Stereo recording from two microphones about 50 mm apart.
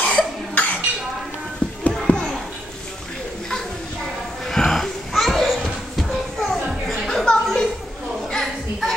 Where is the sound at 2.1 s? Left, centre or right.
Left.